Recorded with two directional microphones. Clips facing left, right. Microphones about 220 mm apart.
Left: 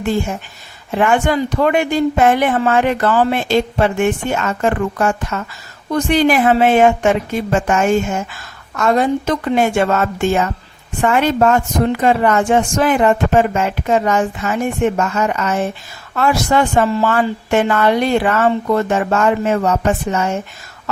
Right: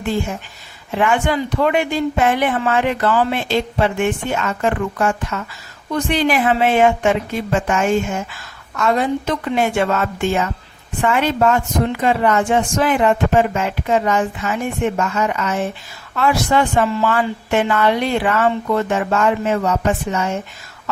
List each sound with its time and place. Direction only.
0.9 s a woman's voice: 45° left (ahead or behind)